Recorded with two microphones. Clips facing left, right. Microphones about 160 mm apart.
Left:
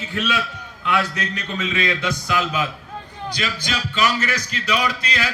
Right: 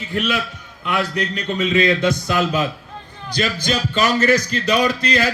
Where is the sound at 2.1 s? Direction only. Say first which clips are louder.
Right 4 dB; 40° right (ahead or behind).